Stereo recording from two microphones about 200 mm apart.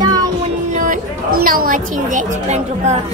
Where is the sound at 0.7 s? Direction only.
40° right (ahead or behind).